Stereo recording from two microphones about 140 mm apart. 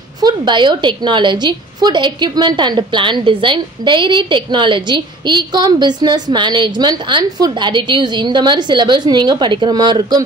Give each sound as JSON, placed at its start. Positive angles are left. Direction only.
{"t": 0.2, "sound": "a woman's voice", "side_deg": -35}